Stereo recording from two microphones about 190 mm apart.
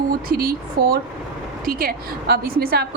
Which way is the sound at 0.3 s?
50° right (ahead or behind).